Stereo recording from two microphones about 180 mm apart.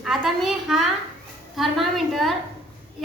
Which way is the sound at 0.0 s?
Centre (ahead or behind).